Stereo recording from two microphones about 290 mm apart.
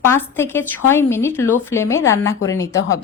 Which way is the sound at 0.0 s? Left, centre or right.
Centre.